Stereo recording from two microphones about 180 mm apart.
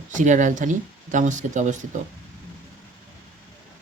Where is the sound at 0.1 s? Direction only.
45° right (ahead or behind).